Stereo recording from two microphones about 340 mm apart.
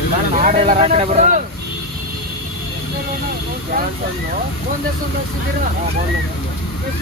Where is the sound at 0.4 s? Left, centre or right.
Right.